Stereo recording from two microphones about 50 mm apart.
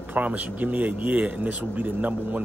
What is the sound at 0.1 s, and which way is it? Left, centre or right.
Speech, right.